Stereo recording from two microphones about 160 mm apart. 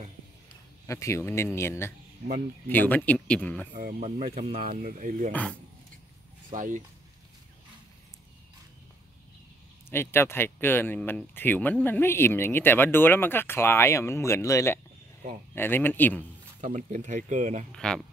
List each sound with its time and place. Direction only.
0.8 s speech: 20° left (ahead or behind)
3.7 s speech: 55° right (ahead or behind)
4.7 s speech: 55° right (ahead or behind)
5.3 s speech: 10° left (ahead or behind)
6.5 s speech: 55° right (ahead or behind)
9.8 s speech: 15° left (ahead or behind)
16.6 s speech: 50° right (ahead or behind)
17.7 s speech: 5° left (ahead or behind)